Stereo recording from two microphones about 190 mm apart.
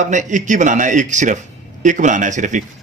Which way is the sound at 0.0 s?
40° right (ahead or behind).